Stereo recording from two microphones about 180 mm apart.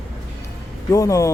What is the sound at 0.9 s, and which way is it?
Speech, 15° left (ahead or behind).